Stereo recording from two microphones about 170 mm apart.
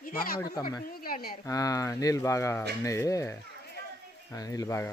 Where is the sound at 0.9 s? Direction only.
60° left (ahead or behind).